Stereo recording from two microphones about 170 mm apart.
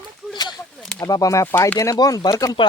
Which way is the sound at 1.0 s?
20° left (ahead or behind).